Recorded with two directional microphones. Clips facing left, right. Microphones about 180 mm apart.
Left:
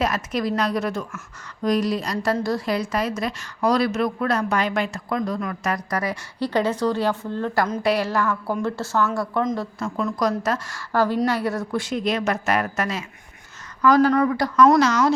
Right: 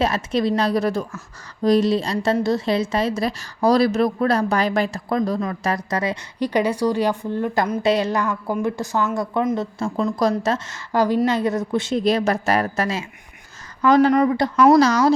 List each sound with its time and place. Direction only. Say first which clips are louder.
0.0 s a woman's voice: right 3 dB; 30° right (ahead or behind)
9.7 s a woman's voice: right 3 dB; 30° right (ahead or behind)